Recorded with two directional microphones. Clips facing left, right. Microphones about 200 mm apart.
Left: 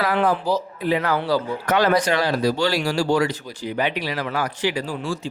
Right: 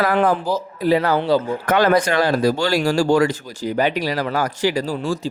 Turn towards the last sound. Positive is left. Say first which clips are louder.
# right 4 dB
turn(degrees=-40)  # may be behind; listen again after turning